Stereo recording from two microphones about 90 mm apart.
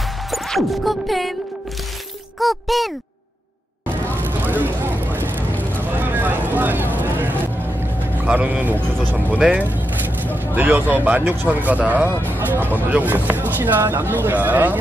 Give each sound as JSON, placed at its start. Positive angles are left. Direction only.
{"t": 0.3, "sound": "music", "side_deg": 0}
{"t": 2.4, "sound": "speech", "side_deg": 0}
{"t": 3.8, "sound": "vehicle", "side_deg": -20}
{"t": 8.3, "sound": "speech", "side_deg": -20}